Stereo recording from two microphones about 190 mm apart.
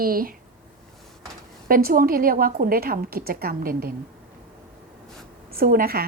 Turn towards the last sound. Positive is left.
turn(degrees=-50)  # may be behind; listen again after turning